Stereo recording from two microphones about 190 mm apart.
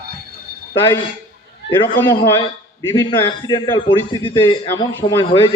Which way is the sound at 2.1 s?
25° left (ahead or behind).